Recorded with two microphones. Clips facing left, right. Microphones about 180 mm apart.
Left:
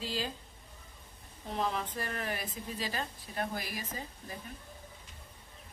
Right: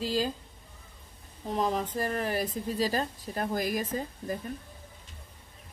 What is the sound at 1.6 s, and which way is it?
Speech, 40° right (ahead or behind).